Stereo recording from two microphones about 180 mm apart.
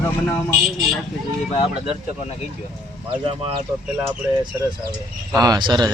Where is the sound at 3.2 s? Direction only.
30° right (ahead or behind).